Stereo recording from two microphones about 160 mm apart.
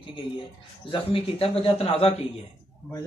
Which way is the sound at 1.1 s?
35° left (ahead or behind).